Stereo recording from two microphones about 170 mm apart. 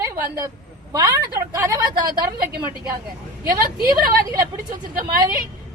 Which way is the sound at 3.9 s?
20° right (ahead or behind).